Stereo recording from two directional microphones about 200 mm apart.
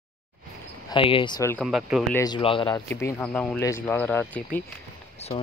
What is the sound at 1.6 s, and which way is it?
Speech, centre (ahead or behind).